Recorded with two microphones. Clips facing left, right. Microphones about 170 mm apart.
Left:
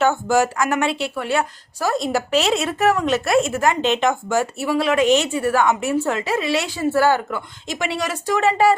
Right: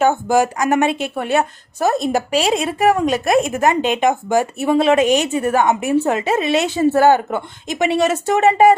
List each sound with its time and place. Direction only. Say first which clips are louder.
0.0 s a woman's voice: right 2 dB; 15° right (ahead or behind)